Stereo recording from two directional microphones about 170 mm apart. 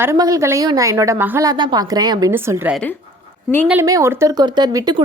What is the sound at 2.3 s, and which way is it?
A woman's voice, 10° right (ahead or behind).